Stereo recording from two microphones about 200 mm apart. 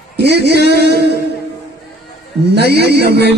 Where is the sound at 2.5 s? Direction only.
55° right (ahead or behind).